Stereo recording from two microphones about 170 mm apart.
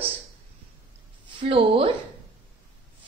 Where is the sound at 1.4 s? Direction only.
35° right (ahead or behind).